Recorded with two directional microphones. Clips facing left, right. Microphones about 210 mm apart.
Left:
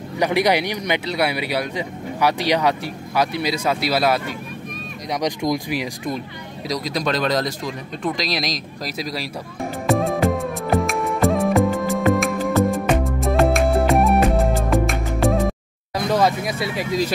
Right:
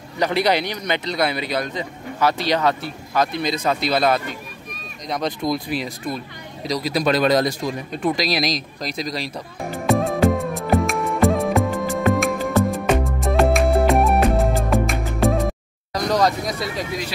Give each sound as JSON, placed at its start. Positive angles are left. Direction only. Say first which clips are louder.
{"t": 0.2, "sound": "speech", "louder": "left 1 dB", "side_deg": 15}
{"t": 6.7, "sound": "speech", "louder": "right 3 dB", "side_deg": -5}
{"t": 9.8, "sound": "music", "louder": "right 1 dB", "side_deg": 0}